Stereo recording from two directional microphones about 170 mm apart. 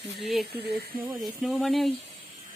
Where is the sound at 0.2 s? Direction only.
Centre (ahead or behind).